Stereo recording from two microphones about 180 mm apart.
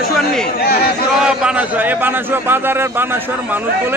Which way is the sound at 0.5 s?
55° left (ahead or behind).